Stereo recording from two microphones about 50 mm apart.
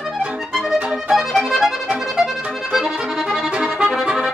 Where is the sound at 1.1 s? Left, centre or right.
Centre.